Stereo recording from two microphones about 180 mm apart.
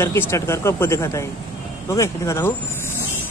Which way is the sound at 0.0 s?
15° left (ahead or behind).